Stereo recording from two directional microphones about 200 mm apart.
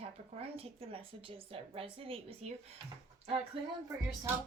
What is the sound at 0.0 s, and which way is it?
A woman's voice, 30° right (ahead or behind).